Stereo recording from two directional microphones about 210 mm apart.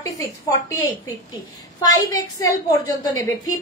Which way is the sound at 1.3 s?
15° left (ahead or behind).